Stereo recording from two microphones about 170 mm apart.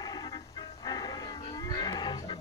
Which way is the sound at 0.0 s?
20° left (ahead or behind).